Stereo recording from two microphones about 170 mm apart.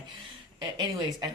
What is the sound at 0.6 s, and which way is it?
Speech, 25° right (ahead or behind).